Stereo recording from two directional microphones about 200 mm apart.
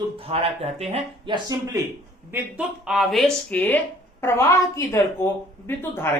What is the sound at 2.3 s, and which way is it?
A woman's voice, 5° right (ahead or behind).